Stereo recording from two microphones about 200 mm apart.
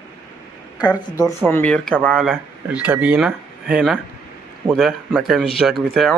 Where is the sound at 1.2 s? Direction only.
10° left (ahead or behind).